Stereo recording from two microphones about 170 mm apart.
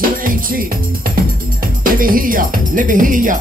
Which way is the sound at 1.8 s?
55° right (ahead or behind).